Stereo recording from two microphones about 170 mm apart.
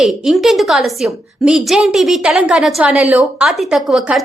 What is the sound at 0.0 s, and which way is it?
A woman's voice, centre (ahead or behind).